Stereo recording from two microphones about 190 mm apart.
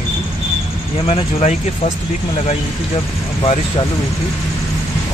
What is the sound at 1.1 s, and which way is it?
Speech, 30° left (ahead or behind).